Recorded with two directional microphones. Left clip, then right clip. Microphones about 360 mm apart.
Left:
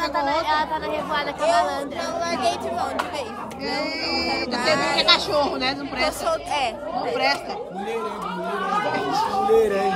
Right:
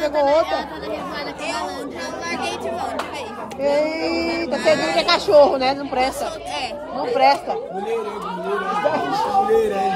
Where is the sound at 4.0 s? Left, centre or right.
Left.